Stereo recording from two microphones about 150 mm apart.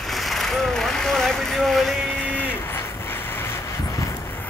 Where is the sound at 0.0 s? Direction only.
Centre (ahead or behind).